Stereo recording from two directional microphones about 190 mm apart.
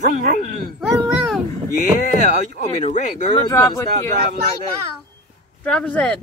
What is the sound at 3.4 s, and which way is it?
Speech, 15° left (ahead or behind).